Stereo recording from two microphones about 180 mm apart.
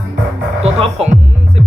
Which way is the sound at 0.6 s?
35° right (ahead or behind).